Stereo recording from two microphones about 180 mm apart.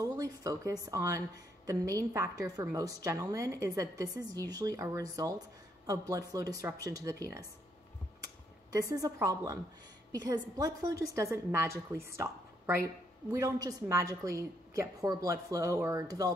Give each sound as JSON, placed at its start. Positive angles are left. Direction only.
{"t": 0.0, "sound": "a woman's voice", "side_deg": -20}
{"t": 9.0, "sound": "a woman's voice", "side_deg": -20}
{"t": 12.1, "sound": "a sound", "side_deg": -15}
{"t": 12.8, "sound": "a woman's voice", "side_deg": -15}